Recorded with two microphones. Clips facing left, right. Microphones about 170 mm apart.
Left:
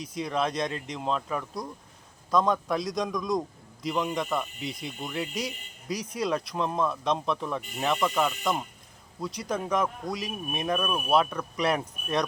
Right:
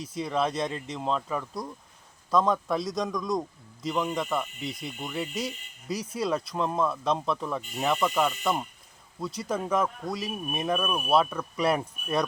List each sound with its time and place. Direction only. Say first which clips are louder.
0.1 s speech: right 1 dB; 5° right (ahead or behind)